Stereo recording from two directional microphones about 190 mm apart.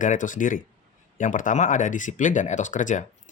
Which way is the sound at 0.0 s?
45° left (ahead or behind).